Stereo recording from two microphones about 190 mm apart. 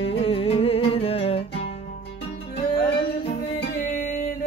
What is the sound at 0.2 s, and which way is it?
Music, 30° left (ahead or behind).